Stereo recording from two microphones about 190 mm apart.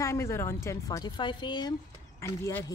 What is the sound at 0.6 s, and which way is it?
A woman's voice, 15° left (ahead or behind).